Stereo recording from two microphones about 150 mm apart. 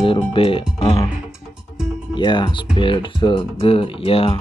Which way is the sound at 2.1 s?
30° left (ahead or behind).